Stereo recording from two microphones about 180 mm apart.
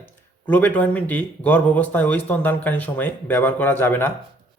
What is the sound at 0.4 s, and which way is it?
Speech, 10° left (ahead or behind).